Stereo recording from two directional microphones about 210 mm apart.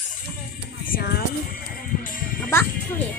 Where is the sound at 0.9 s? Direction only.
45° left (ahead or behind).